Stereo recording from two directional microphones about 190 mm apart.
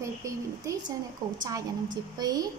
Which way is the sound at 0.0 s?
15° right (ahead or behind).